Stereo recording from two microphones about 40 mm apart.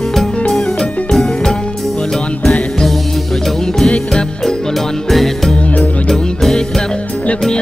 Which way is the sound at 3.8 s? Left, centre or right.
Left.